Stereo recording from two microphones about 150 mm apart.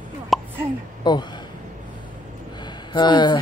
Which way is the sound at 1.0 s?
30° left (ahead or behind).